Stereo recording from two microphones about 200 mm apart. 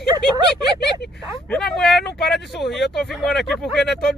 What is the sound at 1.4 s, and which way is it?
Speech, 5° left (ahead or behind).